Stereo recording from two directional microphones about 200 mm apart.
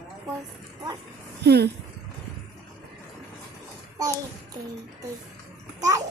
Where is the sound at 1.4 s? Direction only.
55° right (ahead or behind).